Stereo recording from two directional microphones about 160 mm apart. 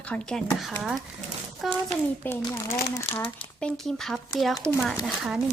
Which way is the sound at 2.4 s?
15° left (ahead or behind).